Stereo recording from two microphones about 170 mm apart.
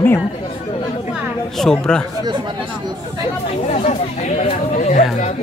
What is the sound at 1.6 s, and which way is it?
Speech, 5° left (ahead or behind).